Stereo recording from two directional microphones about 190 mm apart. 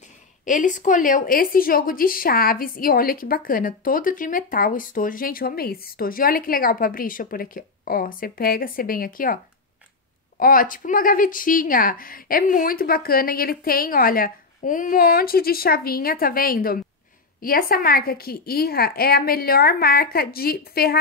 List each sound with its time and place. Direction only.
0.5 s speech: 40° left (ahead or behind)
10.4 s speech: 45° left (ahead or behind)